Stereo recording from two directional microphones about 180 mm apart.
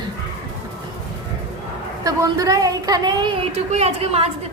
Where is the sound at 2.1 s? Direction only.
20° right (ahead or behind).